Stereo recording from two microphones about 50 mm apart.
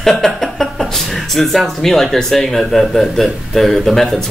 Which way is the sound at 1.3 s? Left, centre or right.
Centre.